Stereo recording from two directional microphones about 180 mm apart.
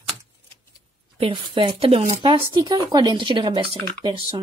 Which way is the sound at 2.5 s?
20° right (ahead or behind).